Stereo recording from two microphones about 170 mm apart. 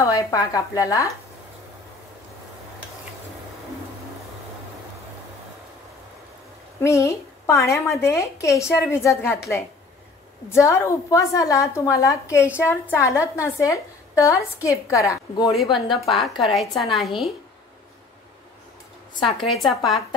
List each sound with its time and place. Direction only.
0.0 s speech: 20° left (ahead or behind)
6.8 s a woman's voice: 15° left (ahead or behind)
15.5 s a woman's voice: centre (ahead or behind)
19.4 s a woman's voice: centre (ahead or behind)